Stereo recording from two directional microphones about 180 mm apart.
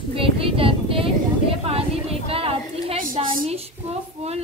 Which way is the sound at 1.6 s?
30° right (ahead or behind).